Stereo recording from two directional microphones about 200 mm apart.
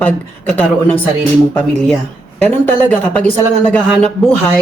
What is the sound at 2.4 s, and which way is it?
A man's voice, 10° left (ahead or behind).